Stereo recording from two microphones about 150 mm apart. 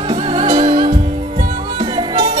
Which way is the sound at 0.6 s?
50° right (ahead or behind).